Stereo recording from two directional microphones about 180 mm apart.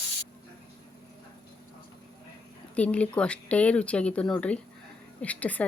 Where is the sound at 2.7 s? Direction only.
5° left (ahead or behind).